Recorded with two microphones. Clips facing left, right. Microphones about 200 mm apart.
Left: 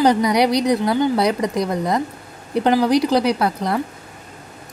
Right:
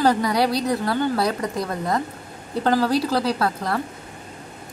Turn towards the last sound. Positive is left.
turn(degrees=20)  # may be behind; listen again after turning